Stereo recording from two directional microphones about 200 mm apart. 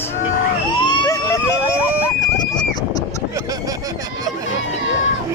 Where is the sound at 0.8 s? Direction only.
20° left (ahead or behind).